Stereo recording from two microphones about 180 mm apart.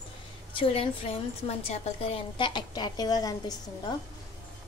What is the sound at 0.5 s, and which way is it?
A woman's voice, 30° left (ahead or behind).